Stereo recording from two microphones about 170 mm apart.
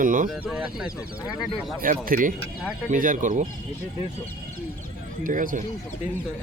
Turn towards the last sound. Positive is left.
turn(degrees=-50)  # may be behind; listen again after turning